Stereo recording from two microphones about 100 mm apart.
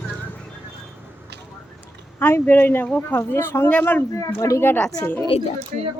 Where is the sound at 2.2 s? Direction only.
20° left (ahead or behind).